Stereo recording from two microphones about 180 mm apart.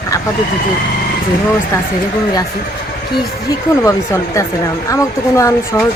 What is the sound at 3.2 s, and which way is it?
Speech, 20° left (ahead or behind).